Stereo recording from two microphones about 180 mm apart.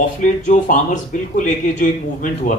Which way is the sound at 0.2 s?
45° left (ahead or behind).